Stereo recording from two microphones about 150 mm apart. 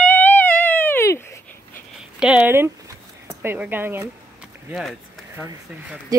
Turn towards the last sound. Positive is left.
turn(degrees=-15)  # may be behind; listen again after turning